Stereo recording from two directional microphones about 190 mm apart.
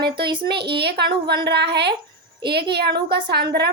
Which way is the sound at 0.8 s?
60° right (ahead or behind).